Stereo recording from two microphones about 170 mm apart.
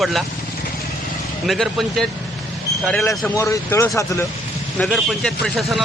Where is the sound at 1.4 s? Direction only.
Centre (ahead or behind).